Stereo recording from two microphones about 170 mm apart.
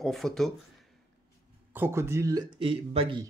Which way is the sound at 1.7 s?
15° right (ahead or behind).